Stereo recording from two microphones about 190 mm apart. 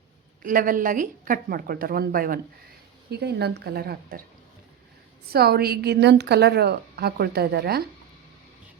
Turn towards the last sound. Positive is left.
turn(degrees=-55)  # may be behind; listen again after turning